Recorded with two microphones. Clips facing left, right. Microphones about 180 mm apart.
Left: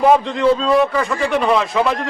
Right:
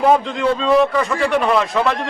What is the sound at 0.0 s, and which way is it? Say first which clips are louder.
A man's voice: left 2 dB; centre (ahead or behind).